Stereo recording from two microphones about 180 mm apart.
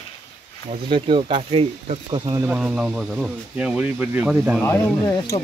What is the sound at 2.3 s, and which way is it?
Speech, 10° right (ahead or behind).